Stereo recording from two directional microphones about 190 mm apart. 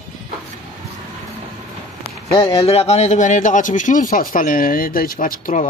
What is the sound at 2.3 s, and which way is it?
A man's voice, 30° left (ahead or behind).